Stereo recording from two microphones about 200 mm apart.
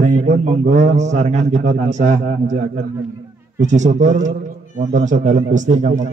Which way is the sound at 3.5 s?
35° right (ahead or behind).